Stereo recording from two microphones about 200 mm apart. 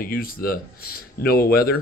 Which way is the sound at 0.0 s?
45° left (ahead or behind).